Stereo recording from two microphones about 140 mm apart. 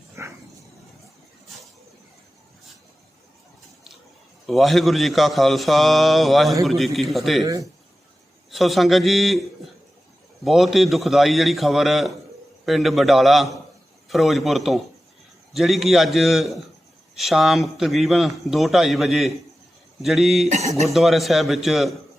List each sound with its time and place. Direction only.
0.2 s dog: 20° right (ahead or behind)
4.4 s a man's voice: centre (ahead or behind)
7.4 s speech: 25° right (ahead or behind)
8.4 s a man's voice: centre (ahead or behind)
10.4 s a man's voice: centre (ahead or behind)
20.5 s speech: 50° right (ahead or behind)
20.8 s a man's voice: centre (ahead or behind)